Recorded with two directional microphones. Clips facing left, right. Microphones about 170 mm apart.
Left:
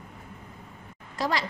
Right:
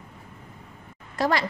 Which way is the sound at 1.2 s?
60° right (ahead or behind).